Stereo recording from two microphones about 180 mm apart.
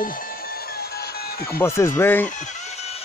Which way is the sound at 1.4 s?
15° left (ahead or behind).